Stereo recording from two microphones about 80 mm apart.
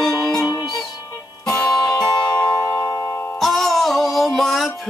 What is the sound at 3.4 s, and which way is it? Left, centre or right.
Music, centre.